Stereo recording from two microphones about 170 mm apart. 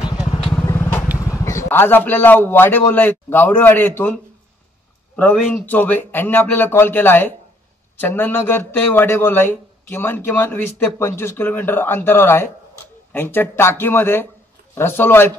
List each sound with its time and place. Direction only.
0.7 s vehicle: 15° left (ahead or behind)
1.1 s a man's voice: 20° left (ahead or behind)